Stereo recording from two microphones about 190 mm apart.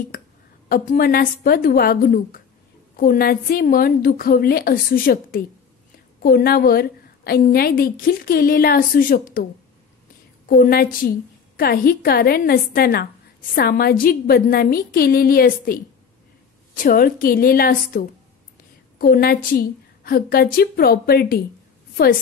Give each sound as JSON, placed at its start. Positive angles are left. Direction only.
{"t": 0.7, "sound": "a woman's voice", "side_deg": 50}
{"t": 10.5, "sound": "a woman's voice", "side_deg": 50}